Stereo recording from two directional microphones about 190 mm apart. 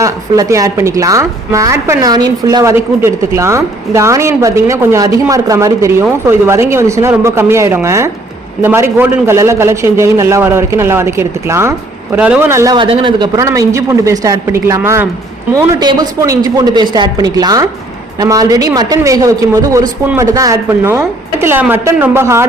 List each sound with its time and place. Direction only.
0.0 s a woman's voice: 15° right (ahead or behind)